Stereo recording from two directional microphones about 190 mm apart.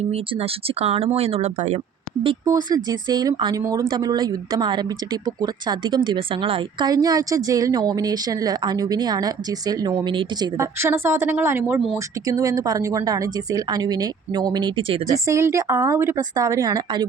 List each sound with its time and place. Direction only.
0.1 s speech: 35° right (ahead or behind)
2.2 s a woman's voice: 20° right (ahead or behind)